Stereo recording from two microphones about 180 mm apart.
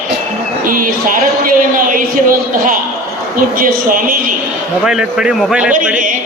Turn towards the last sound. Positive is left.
turn(degrees=0)  # may be behind; listen again after turning